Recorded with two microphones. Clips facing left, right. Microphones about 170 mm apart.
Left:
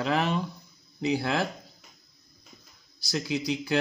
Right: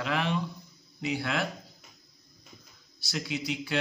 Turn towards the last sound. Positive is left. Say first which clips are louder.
# left 4 dB
turn(degrees=40)  # may be behind; listen again after turning